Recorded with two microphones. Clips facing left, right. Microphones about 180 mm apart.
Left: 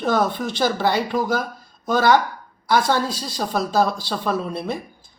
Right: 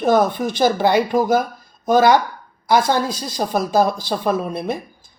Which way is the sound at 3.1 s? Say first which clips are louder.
Right 3 dB; 50° right (ahead or behind).